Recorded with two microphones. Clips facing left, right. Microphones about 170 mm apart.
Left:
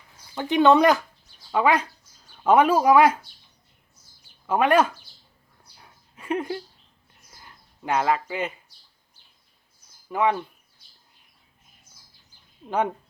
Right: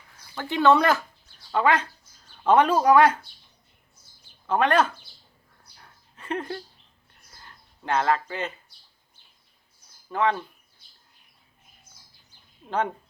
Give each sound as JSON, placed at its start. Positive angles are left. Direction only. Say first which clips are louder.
{"t": 0.3, "sound": "speech", "louder": "left 3 dB", "side_deg": 20}
{"t": 4.4, "sound": "speech", "louder": "left 2 dB", "side_deg": 10}
{"t": 5.7, "sound": "a sound", "louder": "left 2 dB", "side_deg": 10}
{"t": 7.3, "sound": "bird", "louder": "even", "side_deg": 10}
{"t": 10.1, "sound": "speech", "louder": "left 2 dB", "side_deg": 10}